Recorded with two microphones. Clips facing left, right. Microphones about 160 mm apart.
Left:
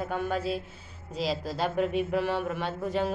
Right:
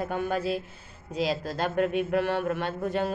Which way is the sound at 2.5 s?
55° right (ahead or behind).